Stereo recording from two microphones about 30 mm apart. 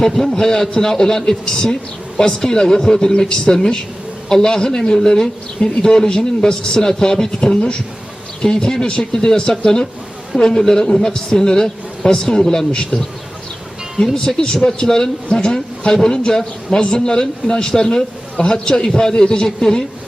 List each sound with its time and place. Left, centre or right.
0.0 s a man's voice: left
14.2 s a man's voice: left